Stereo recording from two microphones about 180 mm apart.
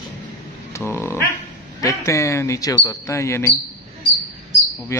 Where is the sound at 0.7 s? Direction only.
15° left (ahead or behind).